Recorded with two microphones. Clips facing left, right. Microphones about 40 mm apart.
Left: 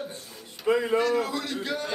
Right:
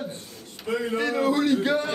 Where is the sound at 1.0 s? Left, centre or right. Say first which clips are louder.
Right 3 dB; right.